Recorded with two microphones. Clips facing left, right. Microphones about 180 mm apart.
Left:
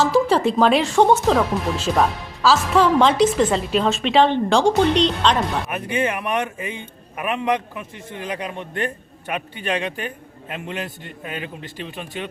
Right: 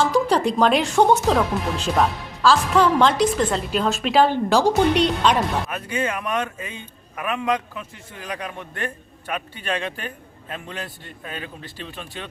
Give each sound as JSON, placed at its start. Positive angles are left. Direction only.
{"t": 0.0, "sound": "speech", "side_deg": 5}
{"t": 5.7, "sound": "a man's voice", "side_deg": 20}